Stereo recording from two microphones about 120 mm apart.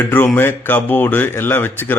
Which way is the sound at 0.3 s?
15° left (ahead or behind).